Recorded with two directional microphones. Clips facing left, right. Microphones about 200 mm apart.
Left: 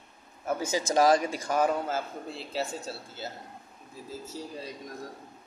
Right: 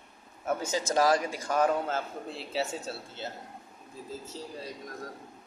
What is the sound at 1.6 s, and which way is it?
A man's voice, 5° left (ahead or behind).